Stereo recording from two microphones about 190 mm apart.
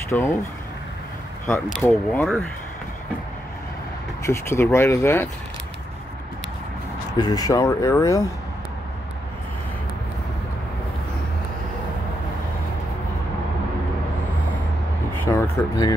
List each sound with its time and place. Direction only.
0.1 s speech: 15° left (ahead or behind)
1.5 s speech: 5° left (ahead or behind)
4.3 s speech: 15° left (ahead or behind)
7.2 s speech: 20° left (ahead or behind)
15.2 s speech: 15° left (ahead or behind)